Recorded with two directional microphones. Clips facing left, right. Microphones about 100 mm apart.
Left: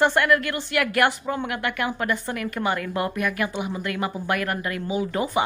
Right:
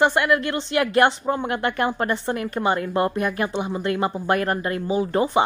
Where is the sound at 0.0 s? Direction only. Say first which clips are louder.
Right 1 dB; 20° right (ahead or behind).